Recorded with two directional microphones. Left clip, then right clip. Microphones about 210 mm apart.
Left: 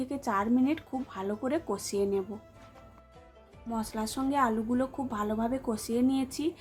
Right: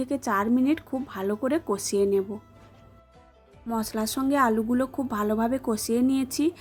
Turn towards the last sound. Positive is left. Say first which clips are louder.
# right 5 dB
turn(degrees=-25)  # may be behind; listen again after turning